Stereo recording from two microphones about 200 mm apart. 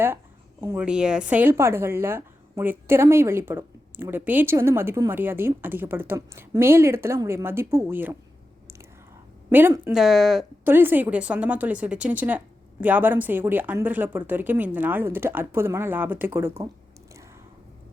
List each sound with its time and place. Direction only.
0.6 s a woman's voice: 10° right (ahead or behind)
9.5 s a woman's voice: 10° right (ahead or behind)